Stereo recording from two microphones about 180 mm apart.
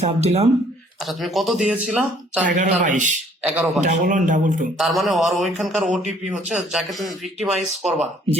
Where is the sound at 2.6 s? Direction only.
45° right (ahead or behind).